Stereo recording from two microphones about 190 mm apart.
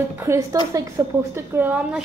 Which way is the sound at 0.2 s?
15° right (ahead or behind).